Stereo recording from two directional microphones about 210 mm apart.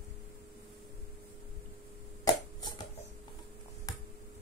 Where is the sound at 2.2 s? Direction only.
20° left (ahead or behind).